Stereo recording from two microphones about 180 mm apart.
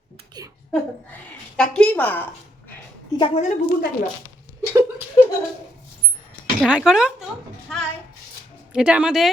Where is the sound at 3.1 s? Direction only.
25° left (ahead or behind).